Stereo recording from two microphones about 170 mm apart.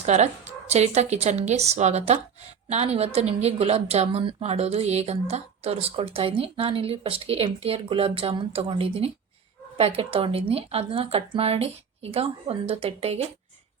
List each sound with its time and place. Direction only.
0.0 s a woman's voice: 40° right (ahead or behind)